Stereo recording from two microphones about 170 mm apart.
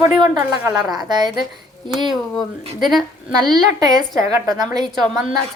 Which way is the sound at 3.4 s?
20° right (ahead or behind).